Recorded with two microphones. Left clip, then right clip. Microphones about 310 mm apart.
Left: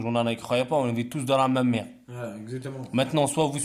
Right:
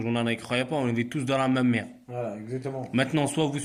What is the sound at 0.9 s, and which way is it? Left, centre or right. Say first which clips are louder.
Speech: left 2 dB; centre.